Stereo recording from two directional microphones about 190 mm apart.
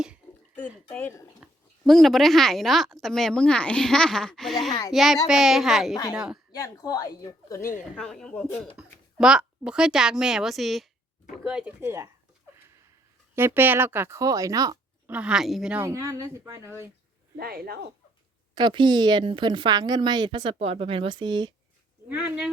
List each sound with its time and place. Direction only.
0.9 s speech: 10° left (ahead or behind)
1.4 s speech: centre (ahead or behind)
6.5 s speech: 20° left (ahead or behind)
7.9 s a woman's voice: 5° left (ahead or behind); by 12.0 s 15° right (ahead or behind)
13.3 s a woman's voice: 10° right (ahead or behind)
15.1 s a woman's voice: 5° right (ahead or behind)
17.3 s speech: 55° right (ahead or behind)
18.5 s speech: 25° right (ahead or behind)
22.1 s speech: 5° right (ahead or behind)